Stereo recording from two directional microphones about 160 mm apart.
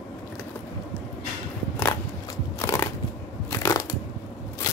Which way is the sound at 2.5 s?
15° left (ahead or behind).